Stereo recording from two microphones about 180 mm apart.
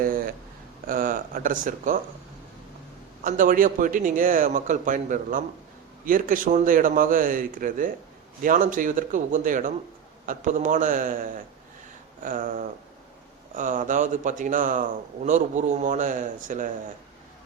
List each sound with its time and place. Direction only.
0.9 s speech: 50° right (ahead or behind)
3.2 s a man's voice: 50° right (ahead or behind)